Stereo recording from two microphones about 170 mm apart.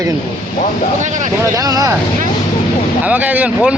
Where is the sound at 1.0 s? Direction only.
45° right (ahead or behind).